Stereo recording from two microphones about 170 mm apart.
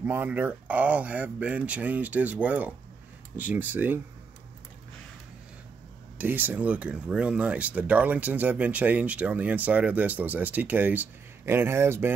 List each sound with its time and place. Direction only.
0.0 s speech: 10° right (ahead or behind)
6.1 s speech: 10° right (ahead or behind)